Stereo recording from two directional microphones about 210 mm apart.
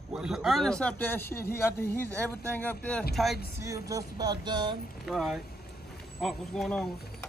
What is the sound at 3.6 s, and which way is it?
Speech, 15° right (ahead or behind).